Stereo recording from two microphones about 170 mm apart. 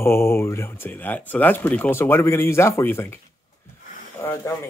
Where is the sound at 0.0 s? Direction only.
15° left (ahead or behind).